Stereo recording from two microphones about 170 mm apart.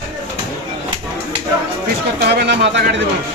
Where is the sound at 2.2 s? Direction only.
75° right (ahead or behind).